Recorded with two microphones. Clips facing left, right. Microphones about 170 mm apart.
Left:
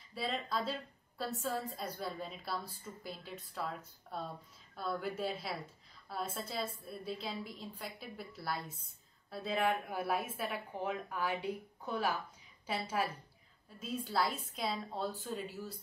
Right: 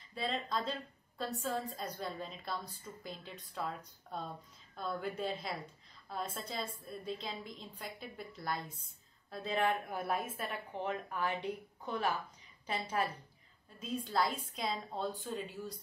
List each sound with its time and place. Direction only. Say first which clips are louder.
0.1 s a woman's voice: even; 5° left (ahead or behind)